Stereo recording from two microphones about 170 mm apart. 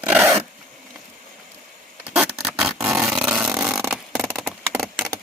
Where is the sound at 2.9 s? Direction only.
5° right (ahead or behind).